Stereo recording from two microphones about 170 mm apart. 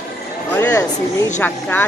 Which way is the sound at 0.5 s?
15° left (ahead or behind).